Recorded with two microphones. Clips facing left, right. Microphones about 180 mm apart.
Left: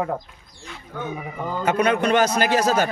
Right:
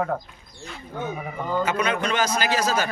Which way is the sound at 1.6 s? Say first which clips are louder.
Left 7 dB; 60° left (ahead or behind).